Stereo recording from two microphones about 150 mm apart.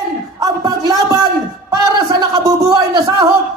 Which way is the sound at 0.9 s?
25° right (ahead or behind).